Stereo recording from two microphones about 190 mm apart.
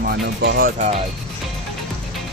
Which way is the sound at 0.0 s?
60° right (ahead or behind).